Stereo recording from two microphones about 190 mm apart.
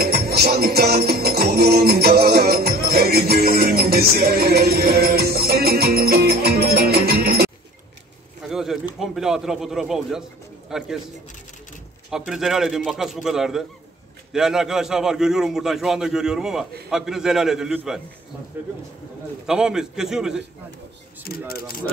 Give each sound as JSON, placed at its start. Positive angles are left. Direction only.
{"t": 0.0, "sound": "music", "side_deg": -55}
{"t": 8.5, "sound": "pigeon", "side_deg": 0}
{"t": 9.0, "sound": "a man's voice", "side_deg": 0}
{"t": 12.3, "sound": "a man's voice", "side_deg": 0}
{"t": 19.4, "sound": "a man's voice", "side_deg": -5}
{"t": 21.2, "sound": "speech", "side_deg": 50}